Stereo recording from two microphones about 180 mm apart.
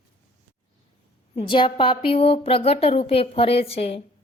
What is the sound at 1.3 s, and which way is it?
A woman's voice, 30° left (ahead or behind).